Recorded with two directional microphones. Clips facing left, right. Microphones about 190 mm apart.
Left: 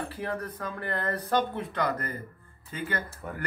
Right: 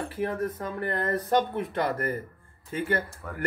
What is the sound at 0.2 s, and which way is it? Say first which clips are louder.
Speech: right 7 dB; 25° right (ahead or behind).